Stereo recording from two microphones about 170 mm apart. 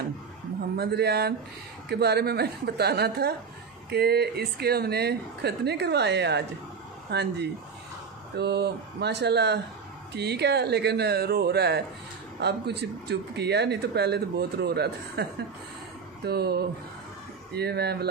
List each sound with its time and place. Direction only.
0.7 s speech: 70° right (ahead or behind)